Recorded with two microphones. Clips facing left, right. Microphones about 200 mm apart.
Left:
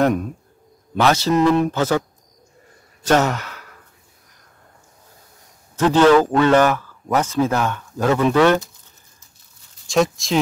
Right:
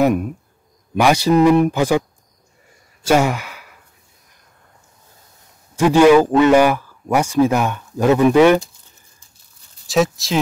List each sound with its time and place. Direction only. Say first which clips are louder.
0.0 s a man's voice: right 2 dB; 10° right (ahead or behind)
3.0 s sigh: right 2 dB; 10° right (ahead or behind)
5.8 s a man's voice: right 3 dB; 10° right (ahead or behind)
9.8 s speech: right 1 dB; centre (ahead or behind)